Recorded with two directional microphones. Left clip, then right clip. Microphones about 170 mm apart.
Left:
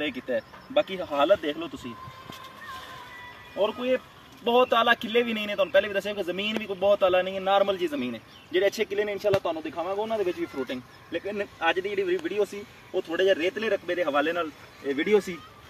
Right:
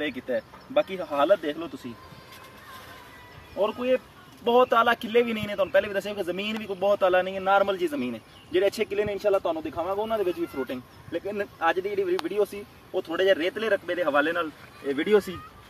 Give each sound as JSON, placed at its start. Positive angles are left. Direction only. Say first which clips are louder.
{"t": 0.0, "sound": "speech", "louder": "even", "side_deg": 0}
{"t": 3.5, "sound": "speech", "louder": "right 1 dB", "side_deg": -5}
{"t": 12.9, "sound": "speech", "louder": "right 1 dB", "side_deg": 45}